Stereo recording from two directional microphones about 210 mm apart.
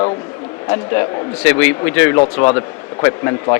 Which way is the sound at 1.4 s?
10° left (ahead or behind).